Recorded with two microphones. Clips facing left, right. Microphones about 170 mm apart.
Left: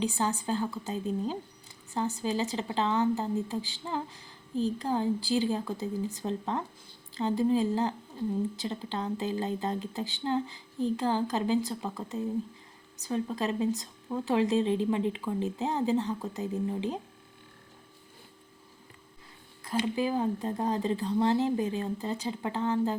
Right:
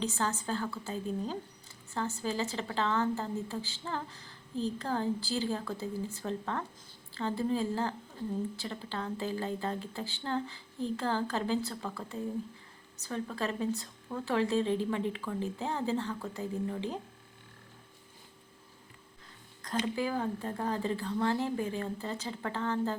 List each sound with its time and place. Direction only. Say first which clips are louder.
0.0 s a woman's voice: left 3 dB; 15° left (ahead or behind)
19.6 s speech: left 3 dB; 10° left (ahead or behind)